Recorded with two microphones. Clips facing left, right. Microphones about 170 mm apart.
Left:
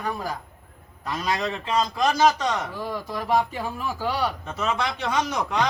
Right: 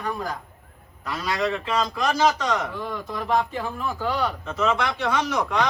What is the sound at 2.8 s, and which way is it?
Speech, 10° left (ahead or behind).